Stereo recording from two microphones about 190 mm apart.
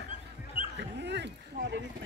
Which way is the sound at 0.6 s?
30° left (ahead or behind).